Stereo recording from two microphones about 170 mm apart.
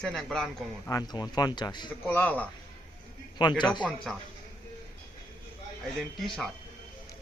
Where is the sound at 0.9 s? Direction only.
20° left (ahead or behind).